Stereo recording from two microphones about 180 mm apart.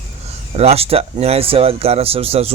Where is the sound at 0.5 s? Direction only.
35° right (ahead or behind).